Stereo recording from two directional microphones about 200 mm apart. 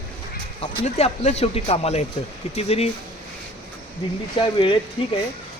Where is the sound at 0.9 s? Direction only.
35° left (ahead or behind).